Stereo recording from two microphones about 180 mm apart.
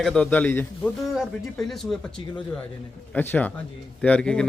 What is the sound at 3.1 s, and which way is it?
A man's voice, 10° left (ahead or behind).